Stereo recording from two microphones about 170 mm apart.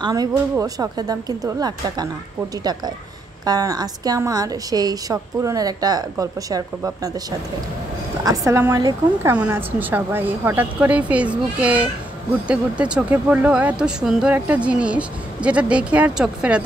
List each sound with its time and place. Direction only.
0.0 s a woman's voice: 20° right (ahead or behind)
3.4 s a woman's voice: 20° right (ahead or behind)
8.2 s a woman's voice: 20° right (ahead or behind)
9.4 s speech: 10° right (ahead or behind)